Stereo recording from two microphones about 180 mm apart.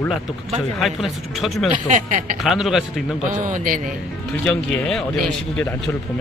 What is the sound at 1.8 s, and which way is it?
Speech, 45° right (ahead or behind).